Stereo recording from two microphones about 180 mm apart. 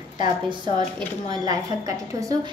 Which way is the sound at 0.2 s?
25° right (ahead or behind).